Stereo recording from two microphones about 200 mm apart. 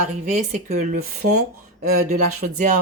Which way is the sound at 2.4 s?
40° right (ahead or behind).